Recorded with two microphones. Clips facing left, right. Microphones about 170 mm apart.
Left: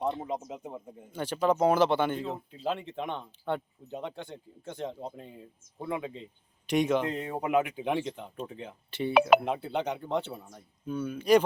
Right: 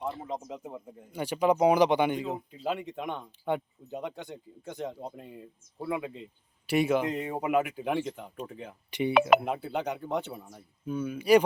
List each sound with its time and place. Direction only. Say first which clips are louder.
0.3 s speech: left 1 dB; 5° left (ahead or behind)
1.1 s speech: right 1 dB; 10° right (ahead or behind)
8.9 s speech: right 3 dB; 15° right (ahead or behind)
9.1 s speech: left 1 dB; centre (ahead or behind)